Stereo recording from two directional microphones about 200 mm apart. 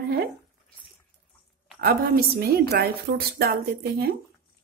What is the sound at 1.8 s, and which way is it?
A woman's voice, 50° right (ahead or behind).